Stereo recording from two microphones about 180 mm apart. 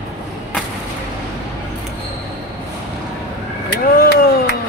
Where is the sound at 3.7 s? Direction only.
70° left (ahead or behind).